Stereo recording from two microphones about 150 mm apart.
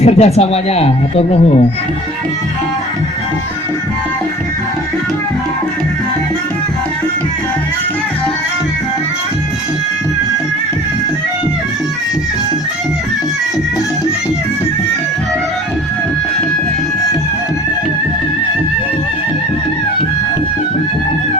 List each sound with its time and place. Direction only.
0.0 s speech: 45° left (ahead or behind)